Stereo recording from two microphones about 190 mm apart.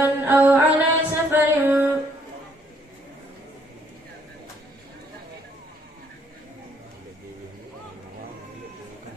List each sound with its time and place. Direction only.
0.0 s music: 10° right (ahead or behind)